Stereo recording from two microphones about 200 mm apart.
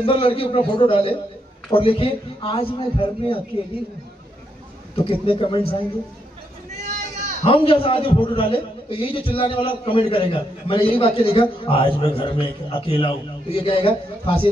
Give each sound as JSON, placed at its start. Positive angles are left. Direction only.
{"t": 0.0, "sound": "a man's voice", "side_deg": 25}
{"t": 4.9, "sound": "a man's voice", "side_deg": 25}
{"t": 7.4, "sound": "a man's voice", "side_deg": 25}